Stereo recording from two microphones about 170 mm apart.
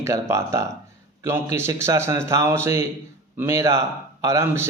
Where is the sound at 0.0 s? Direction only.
15° right (ahead or behind).